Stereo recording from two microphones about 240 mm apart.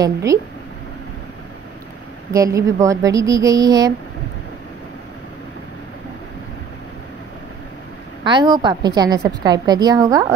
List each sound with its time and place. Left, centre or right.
0.0 s a woman's voice: centre
2.3 s a woman's voice: centre
8.2 s a woman's voice: centre